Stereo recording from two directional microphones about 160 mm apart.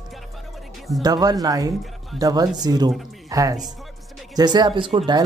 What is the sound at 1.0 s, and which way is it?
Speech, 25° right (ahead or behind).